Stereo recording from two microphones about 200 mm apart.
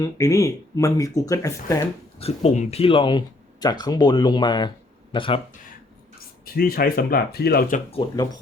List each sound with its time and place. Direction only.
0.0 s speech: 15° left (ahead or behind)
2.1 s speech: 30° left (ahead or behind)
6.4 s speech: 45° left (ahead or behind)
7.9 s speech: 25° left (ahead or behind)